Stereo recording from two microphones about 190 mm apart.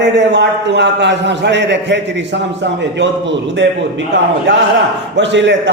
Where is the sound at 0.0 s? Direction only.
65° right (ahead or behind).